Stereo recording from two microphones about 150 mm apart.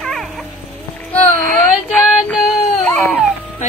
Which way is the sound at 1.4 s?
5° left (ahead or behind).